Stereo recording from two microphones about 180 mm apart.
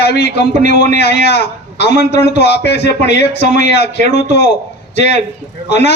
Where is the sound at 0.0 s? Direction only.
65° left (ahead or behind).